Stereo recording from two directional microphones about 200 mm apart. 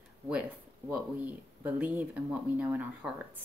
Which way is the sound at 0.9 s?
5° right (ahead or behind).